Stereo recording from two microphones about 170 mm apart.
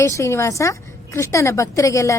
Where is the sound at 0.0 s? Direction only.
15° left (ahead or behind).